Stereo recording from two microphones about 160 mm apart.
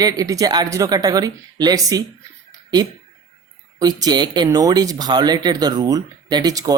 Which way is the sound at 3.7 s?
25° right (ahead or behind).